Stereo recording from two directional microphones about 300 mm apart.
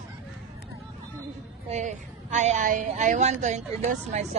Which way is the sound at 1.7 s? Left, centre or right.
Right.